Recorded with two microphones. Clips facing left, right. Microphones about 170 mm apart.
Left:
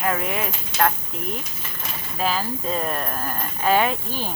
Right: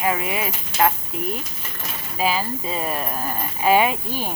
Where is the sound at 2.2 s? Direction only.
10° right (ahead or behind).